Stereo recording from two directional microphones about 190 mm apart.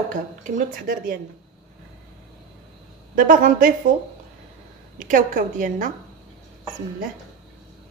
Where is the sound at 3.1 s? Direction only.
45° right (ahead or behind).